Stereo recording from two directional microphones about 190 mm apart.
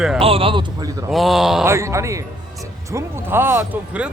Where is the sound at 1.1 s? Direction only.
Centre (ahead or behind).